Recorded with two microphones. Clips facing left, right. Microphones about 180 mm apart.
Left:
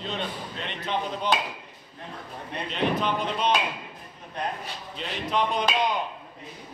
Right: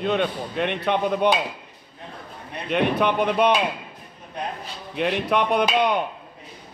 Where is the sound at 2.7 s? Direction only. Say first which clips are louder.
Right 6 dB; 65° right (ahead or behind).